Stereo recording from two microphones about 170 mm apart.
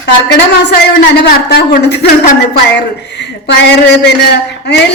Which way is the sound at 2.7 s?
85° left.